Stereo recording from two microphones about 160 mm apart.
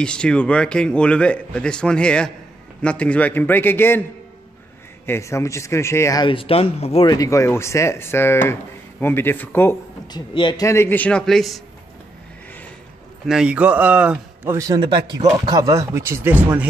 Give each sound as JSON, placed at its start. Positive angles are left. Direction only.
{"t": 0.0, "sound": "a man's voice", "side_deg": 5}
{"t": 5.0, "sound": "a man's voice", "side_deg": 15}
{"t": 6.2, "sound": "speech", "side_deg": 35}
{"t": 7.1, "sound": "a man's voice", "side_deg": 20}
{"t": 10.1, "sound": "a man's voice", "side_deg": 30}
{"t": 13.3, "sound": "speech", "side_deg": -5}